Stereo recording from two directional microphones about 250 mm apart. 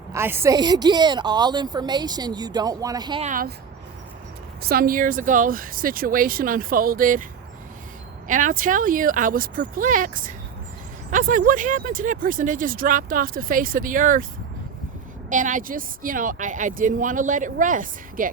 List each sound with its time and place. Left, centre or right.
0.1 s a woman's voice: centre
3.2 s speech: right
4.6 s speech: right
8.3 s speech: right
15.3 s speech: right